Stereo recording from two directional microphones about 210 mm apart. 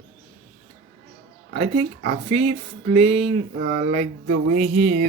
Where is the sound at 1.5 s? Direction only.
30° right (ahead or behind).